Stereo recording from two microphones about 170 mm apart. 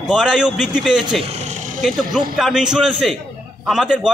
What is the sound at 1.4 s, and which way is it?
Vehicle, 45° right (ahead or behind).